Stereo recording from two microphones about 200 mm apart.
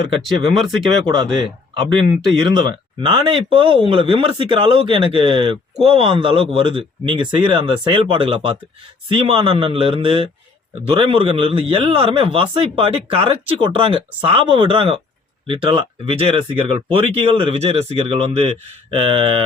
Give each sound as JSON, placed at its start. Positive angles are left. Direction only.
{"t": 1.1, "sound": "speech", "side_deg": -20}